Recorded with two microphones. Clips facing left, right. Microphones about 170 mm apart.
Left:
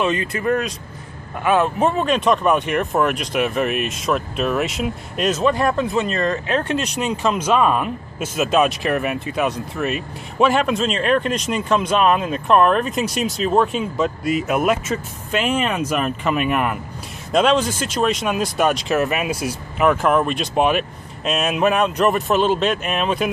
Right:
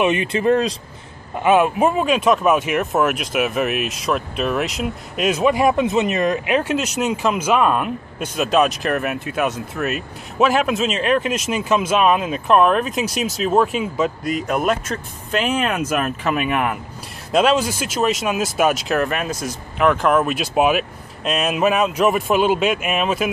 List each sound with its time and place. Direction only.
0.0 s speech: 20° right (ahead or behind)
1.4 s speech: 15° right (ahead or behind)